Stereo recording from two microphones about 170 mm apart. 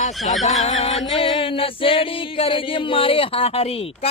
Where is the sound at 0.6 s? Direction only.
45° left (ahead or behind).